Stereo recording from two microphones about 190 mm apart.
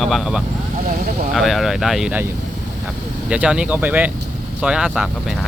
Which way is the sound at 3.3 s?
5° right (ahead or behind).